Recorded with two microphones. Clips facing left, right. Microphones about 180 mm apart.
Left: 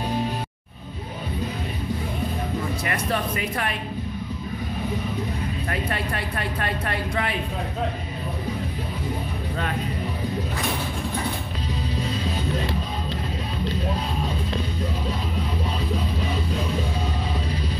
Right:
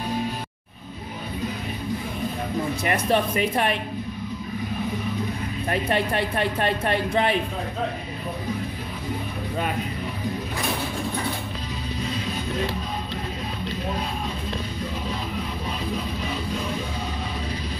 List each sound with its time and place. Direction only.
2.8 s speech: 25° right (ahead or behind)
5.7 s speech: 20° right (ahead or behind)